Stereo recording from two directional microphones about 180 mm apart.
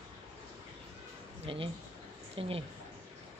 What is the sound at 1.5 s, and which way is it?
Speech, 30° right (ahead or behind).